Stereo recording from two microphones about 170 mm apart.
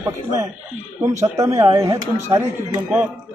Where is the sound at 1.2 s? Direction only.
20° right (ahead or behind).